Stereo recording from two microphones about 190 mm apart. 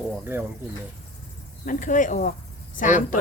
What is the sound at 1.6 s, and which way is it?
Speech, 45° left (ahead or behind).